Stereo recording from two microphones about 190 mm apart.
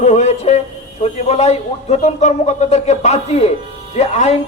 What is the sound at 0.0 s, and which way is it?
A man's voice, 35° left (ahead or behind).